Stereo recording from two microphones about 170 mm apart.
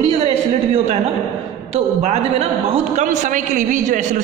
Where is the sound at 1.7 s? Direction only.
40° right (ahead or behind).